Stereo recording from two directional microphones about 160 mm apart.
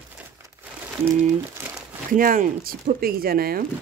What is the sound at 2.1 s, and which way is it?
Speech, 60° right (ahead or behind).